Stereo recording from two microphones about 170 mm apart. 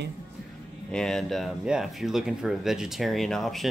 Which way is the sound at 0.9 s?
5° left (ahead or behind).